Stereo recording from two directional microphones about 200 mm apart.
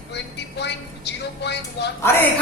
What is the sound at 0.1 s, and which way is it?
A woman's voice, 60° left (ahead or behind).